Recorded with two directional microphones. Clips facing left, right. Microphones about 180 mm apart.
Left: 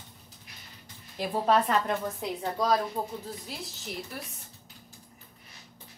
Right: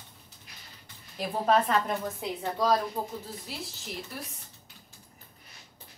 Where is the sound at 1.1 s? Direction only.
Centre (ahead or behind).